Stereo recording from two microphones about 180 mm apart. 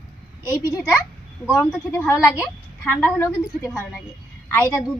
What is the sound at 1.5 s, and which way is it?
A woman's voice, 5° left (ahead or behind).